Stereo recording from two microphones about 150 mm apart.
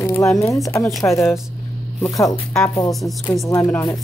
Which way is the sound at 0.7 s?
20° left (ahead or behind).